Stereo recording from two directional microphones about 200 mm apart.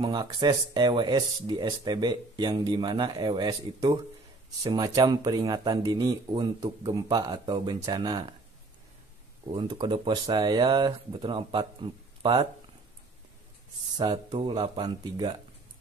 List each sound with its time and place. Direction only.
0.0 s speech: 20° right (ahead or behind)
9.5 s speech: 25° right (ahead or behind)
14.1 s speech: 25° right (ahead or behind)